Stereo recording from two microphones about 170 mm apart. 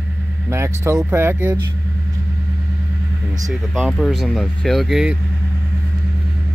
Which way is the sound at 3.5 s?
Centre (ahead or behind).